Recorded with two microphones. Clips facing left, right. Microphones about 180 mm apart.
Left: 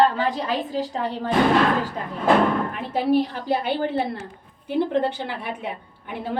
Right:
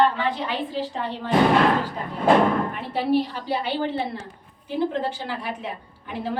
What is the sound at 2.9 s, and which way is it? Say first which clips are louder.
A woman's voice: left 2 dB; 45° left (ahead or behind).